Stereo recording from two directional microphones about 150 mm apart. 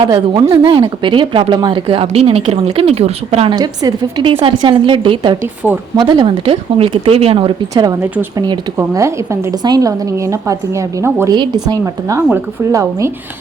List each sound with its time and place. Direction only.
0.0 s speech: 30° right (ahead or behind)
7.7 s a woman's voice: 25° right (ahead or behind)